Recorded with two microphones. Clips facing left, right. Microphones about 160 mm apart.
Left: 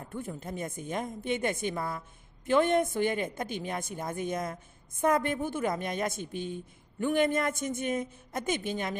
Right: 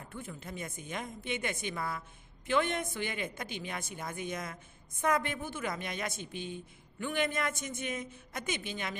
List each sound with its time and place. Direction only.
0.6 s speech: 45° left (ahead or behind)
1.8 s speech: 35° left (ahead or behind)